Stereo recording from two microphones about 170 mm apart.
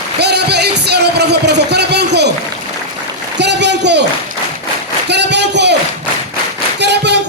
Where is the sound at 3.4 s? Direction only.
90° right.